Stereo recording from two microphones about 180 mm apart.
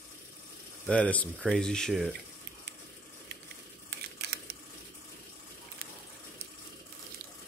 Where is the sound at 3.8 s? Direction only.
65° right (ahead or behind).